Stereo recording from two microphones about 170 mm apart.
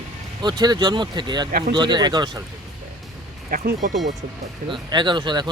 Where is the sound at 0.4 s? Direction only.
25° right (ahead or behind).